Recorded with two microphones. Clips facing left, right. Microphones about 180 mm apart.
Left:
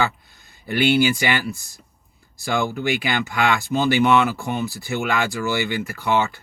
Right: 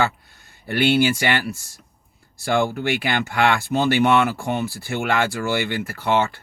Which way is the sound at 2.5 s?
55° right (ahead or behind).